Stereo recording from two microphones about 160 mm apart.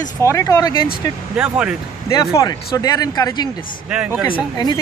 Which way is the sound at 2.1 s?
20° left (ahead or behind).